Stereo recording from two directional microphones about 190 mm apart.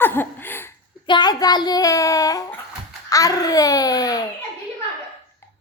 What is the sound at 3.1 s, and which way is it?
Speech, 15° left (ahead or behind).